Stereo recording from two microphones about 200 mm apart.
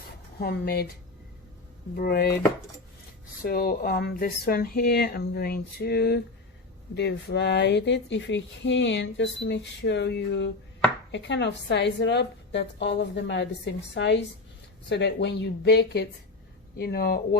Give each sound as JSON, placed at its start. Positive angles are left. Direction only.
{"t": 0.3, "sound": "speech", "side_deg": 50}
{"t": 2.0, "sound": "speech", "side_deg": 50}
{"t": 3.4, "sound": "speech", "side_deg": 45}